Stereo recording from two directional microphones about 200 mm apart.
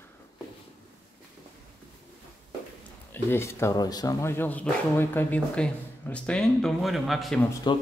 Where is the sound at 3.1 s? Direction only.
10° left (ahead or behind).